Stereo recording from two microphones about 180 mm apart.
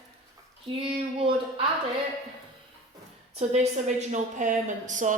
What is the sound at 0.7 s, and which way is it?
Speech, 30° right (ahead or behind).